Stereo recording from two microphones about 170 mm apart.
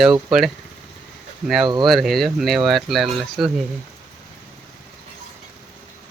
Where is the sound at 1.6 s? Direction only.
25° right (ahead or behind).